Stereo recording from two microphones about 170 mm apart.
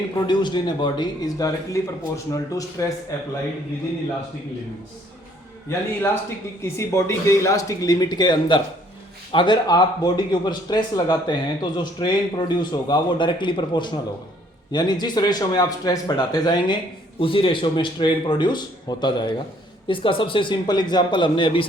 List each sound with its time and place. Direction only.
0.3 s a man's voice: 25° left (ahead or behind)
5.6 s a man's voice: 15° left (ahead or behind)